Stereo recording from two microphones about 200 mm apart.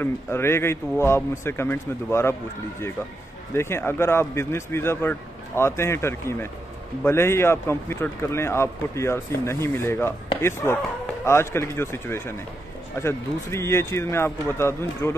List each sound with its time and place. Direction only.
0.0 s speech: 10° left (ahead or behind)
3.5 s speech: 10° left (ahead or behind)